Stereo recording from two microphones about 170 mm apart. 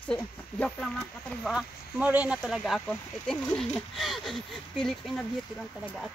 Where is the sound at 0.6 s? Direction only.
5° left (ahead or behind).